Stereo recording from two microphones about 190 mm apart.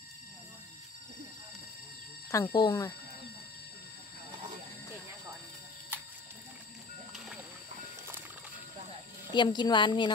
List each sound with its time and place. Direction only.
2.3 s speech: 20° left (ahead or behind)
9.3 s a woman's voice: 25° left (ahead or behind)